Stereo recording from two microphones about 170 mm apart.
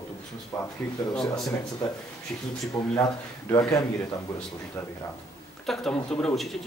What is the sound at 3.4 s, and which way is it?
Speech, 20° left (ahead or behind).